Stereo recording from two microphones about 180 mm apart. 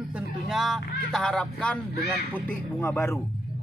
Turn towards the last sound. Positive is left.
turn(degrees=15)  # may be behind; listen again after turning